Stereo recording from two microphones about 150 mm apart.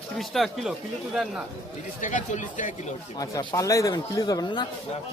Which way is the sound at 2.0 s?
55° left (ahead or behind).